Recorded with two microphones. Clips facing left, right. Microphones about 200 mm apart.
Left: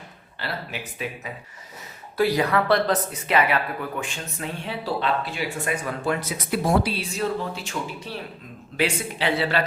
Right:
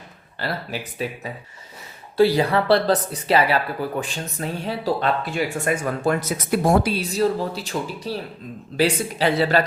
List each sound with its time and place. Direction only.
0.3 s speech: 40° right (ahead or behind)